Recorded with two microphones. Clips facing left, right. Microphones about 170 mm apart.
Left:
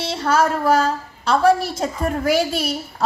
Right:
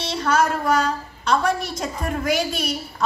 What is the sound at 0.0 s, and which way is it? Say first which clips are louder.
A woman's voice: left 2 dB; 30° left (ahead or behind).